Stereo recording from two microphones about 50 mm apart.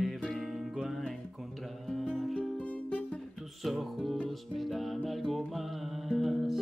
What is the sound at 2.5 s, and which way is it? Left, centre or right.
Music, left.